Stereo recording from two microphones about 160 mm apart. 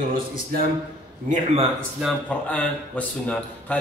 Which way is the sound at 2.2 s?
10° left (ahead or behind).